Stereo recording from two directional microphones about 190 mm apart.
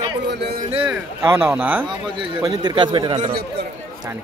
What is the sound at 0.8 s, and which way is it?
Speech, 10° right (ahead or behind).